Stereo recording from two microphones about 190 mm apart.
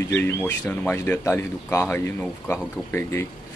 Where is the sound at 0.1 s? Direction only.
10° left (ahead or behind).